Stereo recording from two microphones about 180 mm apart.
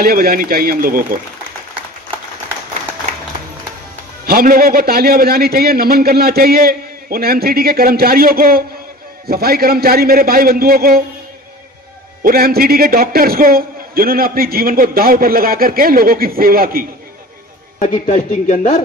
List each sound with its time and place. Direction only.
0.0 s speech: 55° right (ahead or behind)
4.3 s a man's voice: 55° right (ahead or behind)
12.2 s a man's voice: 55° right (ahead or behind)
17.7 s a man's voice: 50° left (ahead or behind)